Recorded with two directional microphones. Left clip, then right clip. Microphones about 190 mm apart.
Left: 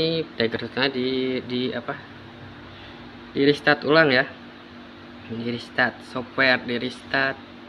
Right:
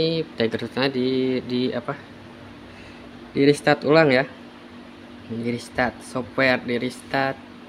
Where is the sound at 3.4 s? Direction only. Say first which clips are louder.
Right 1 dB; 25° right (ahead or behind).